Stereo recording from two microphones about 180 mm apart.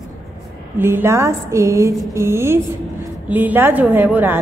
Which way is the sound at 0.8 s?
15° right (ahead or behind).